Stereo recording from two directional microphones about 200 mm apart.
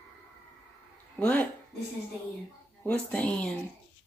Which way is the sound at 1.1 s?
10° left (ahead or behind).